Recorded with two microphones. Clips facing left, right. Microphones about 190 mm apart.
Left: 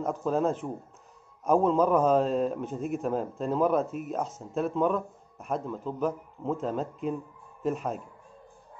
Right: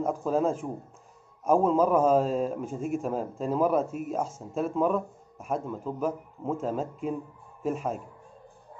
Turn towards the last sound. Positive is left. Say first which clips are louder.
# even
turn(degrees=-5)  # may be behind; listen again after turning